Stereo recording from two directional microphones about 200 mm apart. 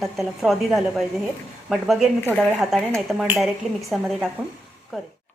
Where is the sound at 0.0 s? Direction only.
Centre (ahead or behind).